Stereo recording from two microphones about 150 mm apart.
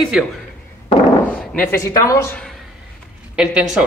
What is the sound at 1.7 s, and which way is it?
Speech, 20° left (ahead or behind).